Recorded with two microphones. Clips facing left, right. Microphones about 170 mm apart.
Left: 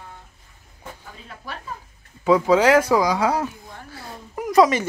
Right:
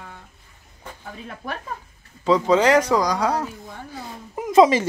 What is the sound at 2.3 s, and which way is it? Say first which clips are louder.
Speech: left 1 dB; 10° left (ahead or behind).